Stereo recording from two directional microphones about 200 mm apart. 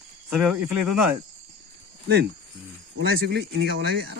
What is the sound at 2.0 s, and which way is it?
Speech, 55° right (ahead or behind).